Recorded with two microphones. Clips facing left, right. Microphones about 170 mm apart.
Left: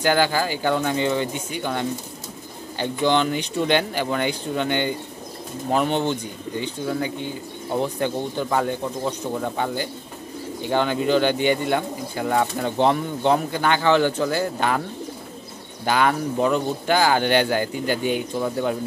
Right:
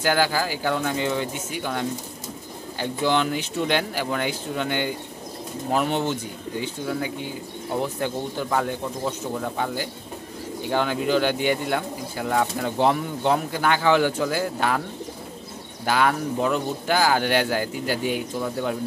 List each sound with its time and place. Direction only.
0.0 s speech: 5° right (ahead or behind)
15.8 s speech: centre (ahead or behind)